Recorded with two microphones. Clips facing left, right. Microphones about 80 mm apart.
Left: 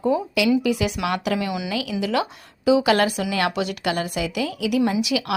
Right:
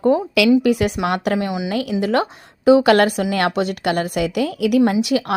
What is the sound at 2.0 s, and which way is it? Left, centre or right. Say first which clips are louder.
Speech: right 4 dB; right.